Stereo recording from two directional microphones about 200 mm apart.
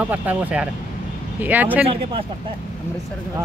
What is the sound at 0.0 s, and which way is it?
Speech, 5° right (ahead or behind).